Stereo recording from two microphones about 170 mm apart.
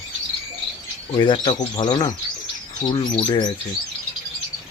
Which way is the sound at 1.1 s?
25° left (ahead or behind).